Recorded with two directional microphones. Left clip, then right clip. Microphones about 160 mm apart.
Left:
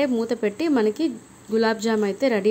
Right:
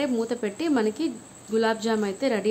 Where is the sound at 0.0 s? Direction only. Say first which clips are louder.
Left 4 dB; 25° left (ahead or behind).